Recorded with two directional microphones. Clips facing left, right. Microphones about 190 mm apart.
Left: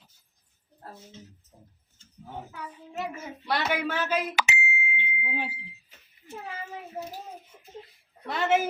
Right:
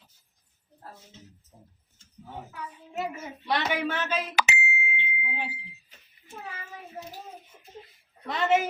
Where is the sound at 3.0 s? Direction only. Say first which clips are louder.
Right 1 dB; centre (ahead or behind).